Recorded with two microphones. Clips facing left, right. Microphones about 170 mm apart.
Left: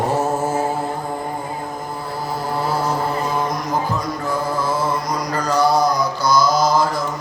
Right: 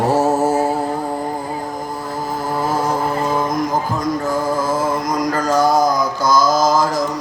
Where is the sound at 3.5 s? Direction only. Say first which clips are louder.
Right 2 dB; 45° right (ahead or behind).